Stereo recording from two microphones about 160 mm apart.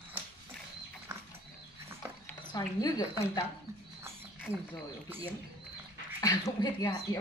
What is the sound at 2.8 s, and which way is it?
Speech, 25° left (ahead or behind).